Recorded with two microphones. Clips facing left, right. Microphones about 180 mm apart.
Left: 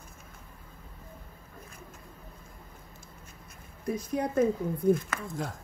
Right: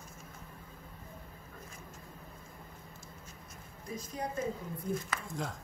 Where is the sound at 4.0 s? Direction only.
65° left (ahead or behind).